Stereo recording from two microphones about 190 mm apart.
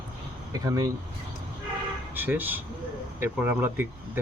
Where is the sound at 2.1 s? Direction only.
10° right (ahead or behind).